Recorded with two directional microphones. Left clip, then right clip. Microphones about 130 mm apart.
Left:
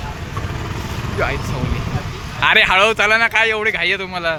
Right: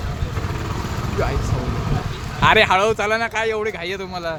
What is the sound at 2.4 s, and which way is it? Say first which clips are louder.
Speech: left 2 dB; 10° right (ahead or behind).